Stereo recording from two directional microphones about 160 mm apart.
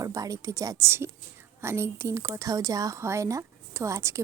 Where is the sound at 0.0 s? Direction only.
20° right (ahead or behind).